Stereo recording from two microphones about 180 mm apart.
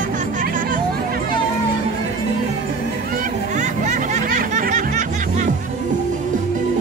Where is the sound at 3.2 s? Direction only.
40° right (ahead or behind).